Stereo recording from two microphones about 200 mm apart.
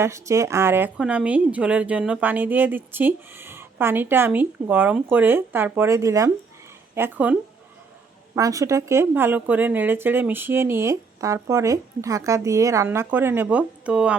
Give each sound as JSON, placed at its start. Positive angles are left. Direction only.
{"t": 0.0, "sound": "speech", "side_deg": -15}
{"t": 8.4, "sound": "speech", "side_deg": -15}